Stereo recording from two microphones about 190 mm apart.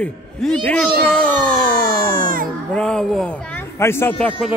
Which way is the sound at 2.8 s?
5° left (ahead or behind).